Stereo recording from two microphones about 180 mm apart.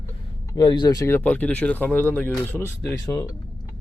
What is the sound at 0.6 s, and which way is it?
Speech, 25° left (ahead or behind).